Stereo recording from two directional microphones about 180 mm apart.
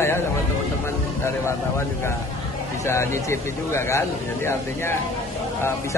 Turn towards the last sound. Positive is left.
turn(degrees=15)  # may be behind; listen again after turning